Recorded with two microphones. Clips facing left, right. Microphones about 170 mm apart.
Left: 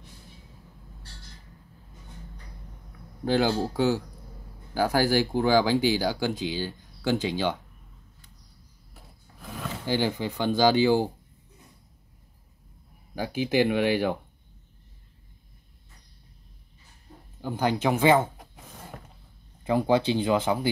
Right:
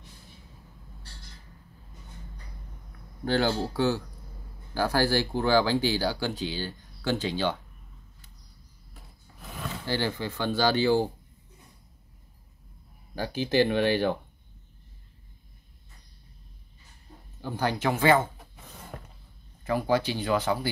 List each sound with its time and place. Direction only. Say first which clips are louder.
3.3 s speech: left 2 dB; 15° left (ahead or behind)
9.8 s speech: left 3 dB; 15° left (ahead or behind)
13.1 s speech: left 1 dB; 10° left (ahead or behind)
17.4 s speech: left 3 dB; 15° left (ahead or behind)
19.6 s speech: left 3 dB; 20° left (ahead or behind)